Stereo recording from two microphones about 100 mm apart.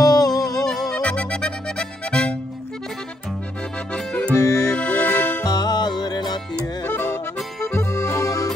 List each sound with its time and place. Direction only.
0.0 s music: 40° left (ahead or behind)
0.7 s music: 10° left (ahead or behind)
3.9 s accordion: 10° left (ahead or behind)
4.4 s music: 35° left (ahead or behind)
4.7 s music: 15° left (ahead or behind)
5.4 s music: 45° left (ahead or behind)
6.9 s music: 20° left (ahead or behind)
7.6 s accordion: 25° left (ahead or behind)